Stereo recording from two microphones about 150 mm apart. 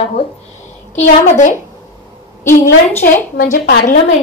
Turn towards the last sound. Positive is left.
turn(degrees=75)  # may be behind; listen again after turning